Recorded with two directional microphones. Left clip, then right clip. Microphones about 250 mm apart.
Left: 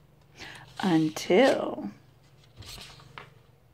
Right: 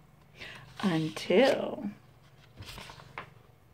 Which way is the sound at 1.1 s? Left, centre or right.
Left.